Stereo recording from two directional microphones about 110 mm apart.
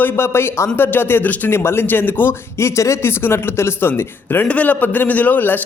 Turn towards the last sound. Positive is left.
turn(degrees=15)  # may be behind; listen again after turning